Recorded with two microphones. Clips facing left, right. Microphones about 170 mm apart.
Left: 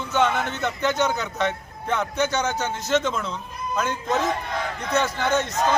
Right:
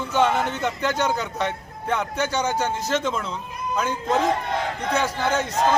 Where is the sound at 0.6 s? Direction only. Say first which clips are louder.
Even; 10° right (ahead or behind).